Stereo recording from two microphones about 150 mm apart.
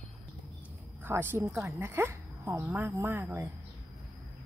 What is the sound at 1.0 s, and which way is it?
Speech, 15° right (ahead or behind).